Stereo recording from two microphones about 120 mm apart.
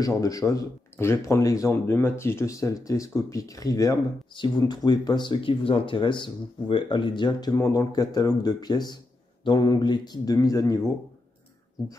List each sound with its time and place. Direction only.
0.0 s speech: 30° left (ahead or behind)